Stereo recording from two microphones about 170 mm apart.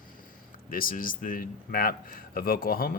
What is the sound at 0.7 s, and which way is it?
A man's voice, 55° left (ahead or behind).